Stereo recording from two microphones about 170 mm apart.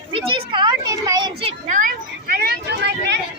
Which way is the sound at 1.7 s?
50° right (ahead or behind).